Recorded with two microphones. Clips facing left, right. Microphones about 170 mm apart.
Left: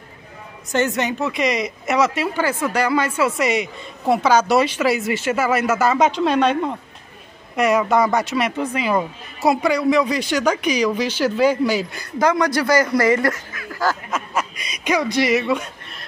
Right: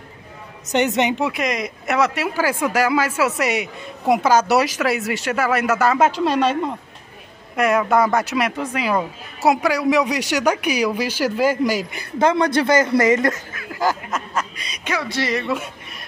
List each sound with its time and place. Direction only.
0.7 s speech: 20° right (ahead or behind)
1.3 s speech: centre (ahead or behind)
7.5 s speech: centre (ahead or behind)
12.2 s speech: 25° right (ahead or behind)
13.7 s a sound: 20° right (ahead or behind)
14.1 s speech: centre (ahead or behind)
14.9 s speech: 15° left (ahead or behind)
15.4 s speech: 5° right (ahead or behind)